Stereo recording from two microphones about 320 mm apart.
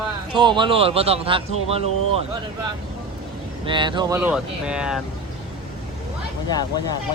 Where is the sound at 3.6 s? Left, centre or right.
Centre.